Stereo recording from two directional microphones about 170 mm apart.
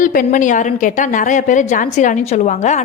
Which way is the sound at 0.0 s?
55° left (ahead or behind).